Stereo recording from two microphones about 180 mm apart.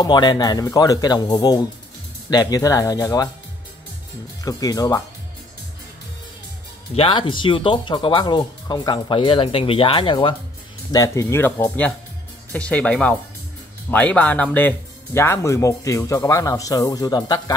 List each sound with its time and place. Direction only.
0.0 s speech: 25° left (ahead or behind)
4.5 s speech: 20° left (ahead or behind)
7.0 s speech: 25° left (ahead or behind)